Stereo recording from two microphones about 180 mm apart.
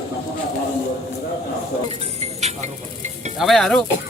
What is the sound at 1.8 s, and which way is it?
Stir, 35° right (ahead or behind).